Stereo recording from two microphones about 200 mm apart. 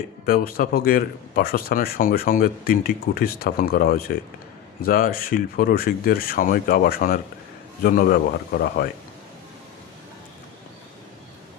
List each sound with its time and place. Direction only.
0.3 s a man's voice: 45° left (ahead or behind)